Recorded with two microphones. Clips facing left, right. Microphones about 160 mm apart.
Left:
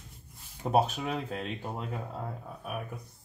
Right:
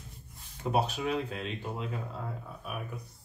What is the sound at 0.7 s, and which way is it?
Speech, 45° left (ahead or behind).